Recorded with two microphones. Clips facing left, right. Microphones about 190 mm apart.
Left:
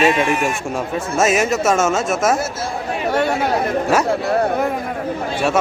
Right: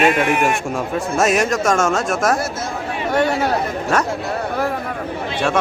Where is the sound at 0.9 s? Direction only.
Centre (ahead or behind).